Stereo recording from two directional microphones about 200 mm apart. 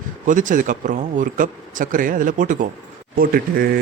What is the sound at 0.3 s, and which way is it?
Speech, 40° right (ahead or behind).